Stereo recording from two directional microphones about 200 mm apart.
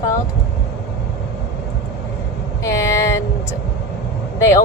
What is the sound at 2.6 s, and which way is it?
Vehicle, 15° left (ahead or behind).